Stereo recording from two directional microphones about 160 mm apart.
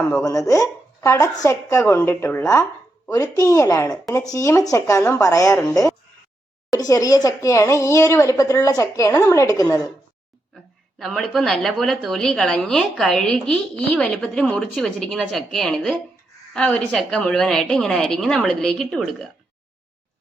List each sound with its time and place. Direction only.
0.2 s speech: 20° left (ahead or behind)
11.0 s a woman's voice: centre (ahead or behind)